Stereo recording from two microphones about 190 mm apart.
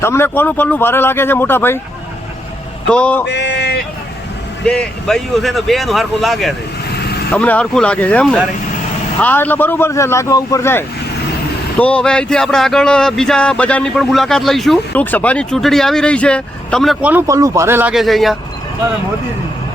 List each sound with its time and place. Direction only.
0.0 s speech: 15° left (ahead or behind)
2.9 s speech: 5° left (ahead or behind)
3.2 s male singing: 65° left (ahead or behind)
4.6 s speech: 5° left (ahead or behind)